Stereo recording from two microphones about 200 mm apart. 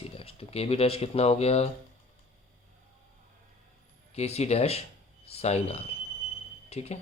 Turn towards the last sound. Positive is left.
turn(degrees=30)  # may be behind; listen again after turning